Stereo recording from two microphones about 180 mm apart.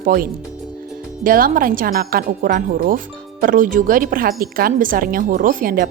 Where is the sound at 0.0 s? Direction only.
50° right (ahead or behind).